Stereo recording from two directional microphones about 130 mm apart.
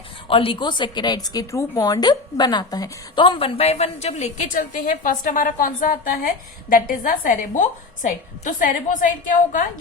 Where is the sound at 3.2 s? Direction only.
45° left (ahead or behind).